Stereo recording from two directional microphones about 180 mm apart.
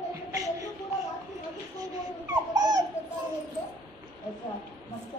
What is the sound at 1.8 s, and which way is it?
Dog, 20° right (ahead or behind).